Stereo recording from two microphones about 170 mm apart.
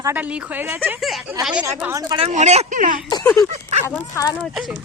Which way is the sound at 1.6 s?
15° right (ahead or behind).